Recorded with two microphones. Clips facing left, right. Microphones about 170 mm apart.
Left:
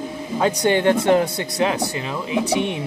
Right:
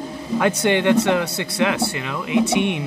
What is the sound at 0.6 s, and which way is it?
Speech, 40° left (ahead or behind).